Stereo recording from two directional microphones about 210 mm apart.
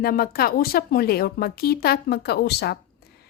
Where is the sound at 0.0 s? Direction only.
45° left (ahead or behind).